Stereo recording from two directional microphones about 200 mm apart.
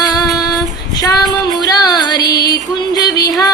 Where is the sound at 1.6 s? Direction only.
20° left (ahead or behind).